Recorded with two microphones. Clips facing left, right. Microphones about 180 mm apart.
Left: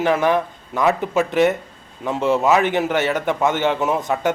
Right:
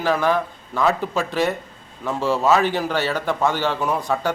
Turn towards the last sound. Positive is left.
turn(degrees=20)  # may be behind; listen again after turning